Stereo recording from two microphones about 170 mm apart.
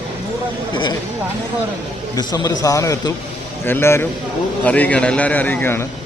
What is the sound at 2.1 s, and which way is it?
A man's voice, 20° left (ahead or behind).